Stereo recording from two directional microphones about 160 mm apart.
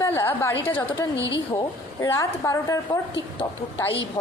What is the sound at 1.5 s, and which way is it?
A woman's voice, 20° left (ahead or behind).